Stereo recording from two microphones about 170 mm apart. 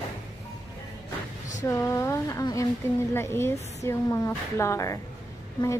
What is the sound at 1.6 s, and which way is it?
A woman's voice, 15° left (ahead or behind).